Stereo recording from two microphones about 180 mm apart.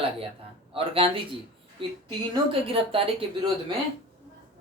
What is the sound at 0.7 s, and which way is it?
Speech, 30° right (ahead or behind).